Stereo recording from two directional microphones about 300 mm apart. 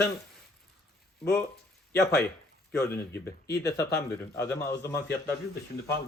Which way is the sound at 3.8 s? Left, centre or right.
Left.